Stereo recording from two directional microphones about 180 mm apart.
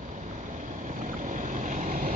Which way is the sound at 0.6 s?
45° right (ahead or behind).